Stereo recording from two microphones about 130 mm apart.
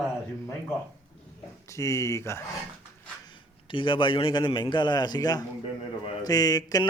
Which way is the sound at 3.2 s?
40° left (ahead or behind).